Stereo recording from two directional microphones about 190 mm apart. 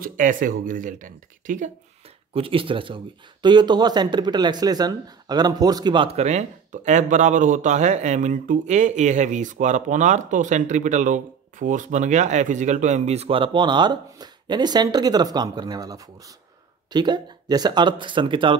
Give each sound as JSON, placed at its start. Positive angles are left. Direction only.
{"t": 0.0, "sound": "speech", "side_deg": -45}
{"t": 2.3, "sound": "speech", "side_deg": -30}